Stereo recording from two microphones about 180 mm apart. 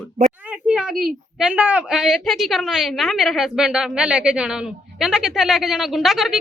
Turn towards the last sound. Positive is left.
turn(degrees=0)  # may be behind; listen again after turning